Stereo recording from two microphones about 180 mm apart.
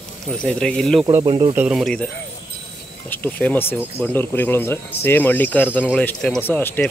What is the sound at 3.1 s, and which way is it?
Speech, 10° left (ahead or behind).